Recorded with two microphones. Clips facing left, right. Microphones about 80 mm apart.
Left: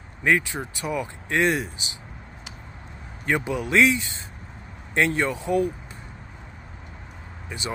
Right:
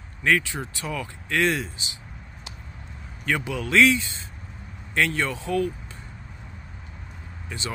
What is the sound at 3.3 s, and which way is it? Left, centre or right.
Speech, left.